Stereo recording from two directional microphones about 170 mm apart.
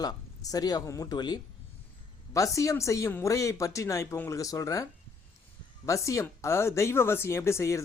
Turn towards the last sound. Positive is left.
turn(degrees=15)  # may be behind; listen again after turning